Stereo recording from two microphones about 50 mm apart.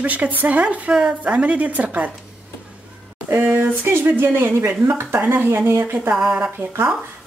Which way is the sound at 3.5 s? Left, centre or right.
Right.